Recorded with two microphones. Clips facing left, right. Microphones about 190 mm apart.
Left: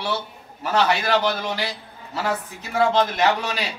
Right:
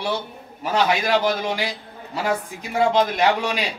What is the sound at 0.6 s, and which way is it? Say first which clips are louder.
Speech: even; 10° right (ahead or behind).